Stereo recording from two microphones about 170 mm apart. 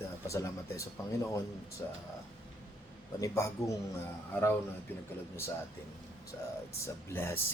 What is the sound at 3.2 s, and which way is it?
Speech, 20° left (ahead or behind).